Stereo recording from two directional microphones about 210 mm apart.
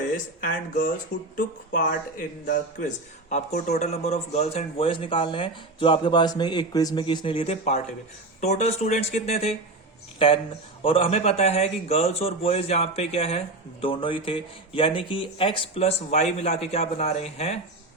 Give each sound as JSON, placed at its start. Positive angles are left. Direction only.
{"t": 1.4, "sound": "speech", "side_deg": 40}